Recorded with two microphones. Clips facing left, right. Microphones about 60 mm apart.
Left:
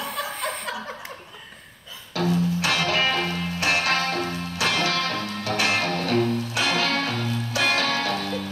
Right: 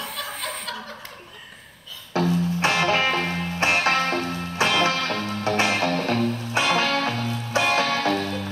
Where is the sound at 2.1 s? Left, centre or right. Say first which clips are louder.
Right 1 dB; right.